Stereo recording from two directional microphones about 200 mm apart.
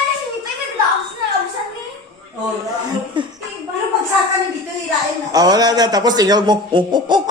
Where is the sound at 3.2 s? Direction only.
25° right (ahead or behind).